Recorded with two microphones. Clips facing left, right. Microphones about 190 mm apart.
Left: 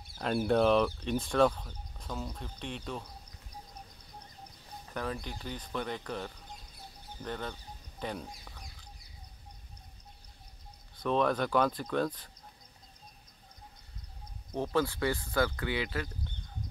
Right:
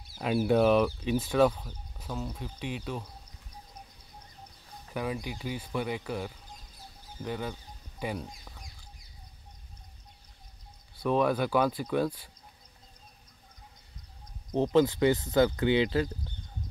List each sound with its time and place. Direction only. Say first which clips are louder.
0.1 s speech: right 3 dB; 5° right (ahead or behind)
4.9 s speech: right 3 dB; 10° right (ahead or behind)
11.0 s speech: right 2 dB; 5° right (ahead or behind)
14.5 s speech: right 7 dB; 20° right (ahead or behind)